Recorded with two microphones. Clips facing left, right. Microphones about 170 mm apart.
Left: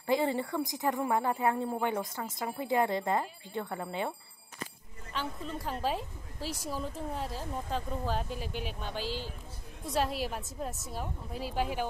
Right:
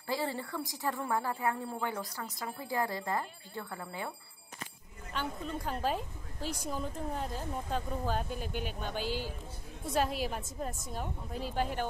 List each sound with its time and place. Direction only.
0.0 s a woman's voice: 20° left (ahead or behind)
5.1 s a woman's voice: centre (ahead or behind)